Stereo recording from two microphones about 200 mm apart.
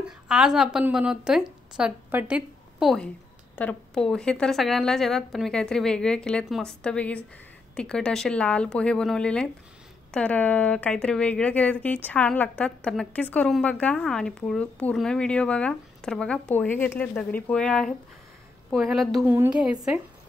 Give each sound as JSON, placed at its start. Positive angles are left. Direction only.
{"t": 0.3, "sound": "speech", "side_deg": -5}